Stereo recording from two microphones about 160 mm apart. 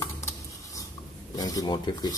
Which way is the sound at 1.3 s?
25° left (ahead or behind).